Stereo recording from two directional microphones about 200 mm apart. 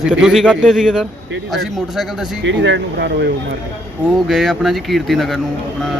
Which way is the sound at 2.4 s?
65° right (ahead or behind).